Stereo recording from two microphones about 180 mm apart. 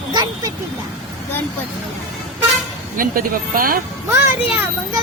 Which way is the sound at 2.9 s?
50° right (ahead or behind).